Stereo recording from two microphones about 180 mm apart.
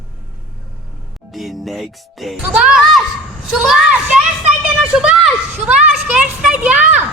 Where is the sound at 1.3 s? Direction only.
Centre (ahead or behind).